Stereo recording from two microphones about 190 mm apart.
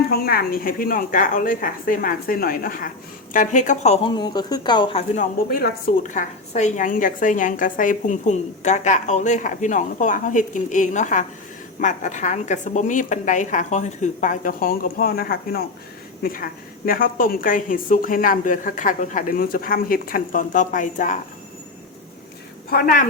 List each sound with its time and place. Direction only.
0.1 s a woman's voice: 50° left (ahead or behind); by 5.2 s 30° left (ahead or behind)
5.5 s a woman's voice: 50° left (ahead or behind)
22.7 s a woman's voice: 45° left (ahead or behind)